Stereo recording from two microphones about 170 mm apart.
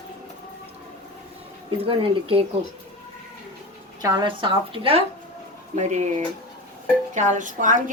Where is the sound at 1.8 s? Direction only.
30° right (ahead or behind).